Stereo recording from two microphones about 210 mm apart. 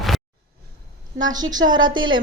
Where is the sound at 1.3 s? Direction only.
20° right (ahead or behind).